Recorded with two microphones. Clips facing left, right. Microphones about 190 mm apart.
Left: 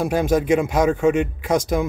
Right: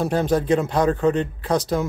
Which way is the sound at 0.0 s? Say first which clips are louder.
Left 1 dB; 10° left (ahead or behind).